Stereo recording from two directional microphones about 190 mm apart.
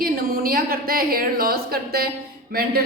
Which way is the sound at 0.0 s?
50° right (ahead or behind).